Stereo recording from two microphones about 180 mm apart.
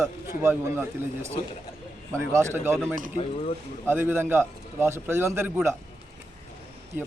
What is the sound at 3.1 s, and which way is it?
Speech, 35° left (ahead or behind).